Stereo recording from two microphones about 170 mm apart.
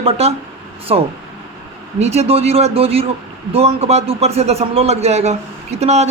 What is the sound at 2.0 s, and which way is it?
A woman's voice, 40° right (ahead or behind).